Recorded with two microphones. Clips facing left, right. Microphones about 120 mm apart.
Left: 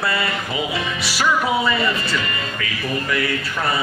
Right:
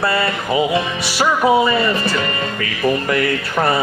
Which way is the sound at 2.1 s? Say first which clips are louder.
Right 4 dB; 40° right (ahead or behind).